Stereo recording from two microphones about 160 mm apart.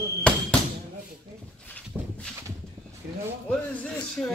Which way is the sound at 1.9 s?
Centre (ahead or behind).